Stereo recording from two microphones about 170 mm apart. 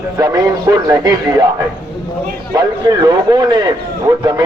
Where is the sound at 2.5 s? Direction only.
20° right (ahead or behind).